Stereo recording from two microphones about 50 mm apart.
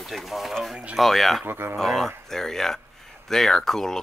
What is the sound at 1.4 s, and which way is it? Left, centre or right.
Speech, right.